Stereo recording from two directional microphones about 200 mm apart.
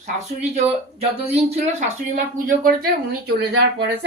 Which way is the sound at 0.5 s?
30° right (ahead or behind).